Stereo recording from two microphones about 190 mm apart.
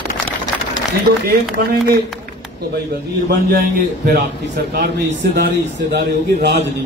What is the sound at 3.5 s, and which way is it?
A man's voice, 50° right (ahead or behind).